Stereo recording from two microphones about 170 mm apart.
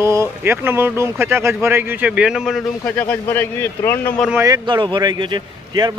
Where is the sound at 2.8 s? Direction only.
10° left (ahead or behind).